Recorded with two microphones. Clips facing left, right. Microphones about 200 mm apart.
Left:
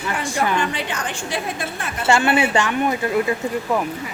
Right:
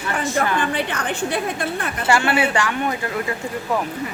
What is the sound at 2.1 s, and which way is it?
Speech, 25° left (ahead or behind).